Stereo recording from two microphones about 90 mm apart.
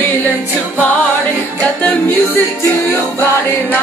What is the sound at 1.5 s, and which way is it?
Music, 20° left (ahead or behind).